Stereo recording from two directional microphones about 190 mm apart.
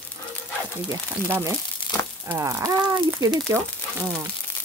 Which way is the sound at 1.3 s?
15° right (ahead or behind).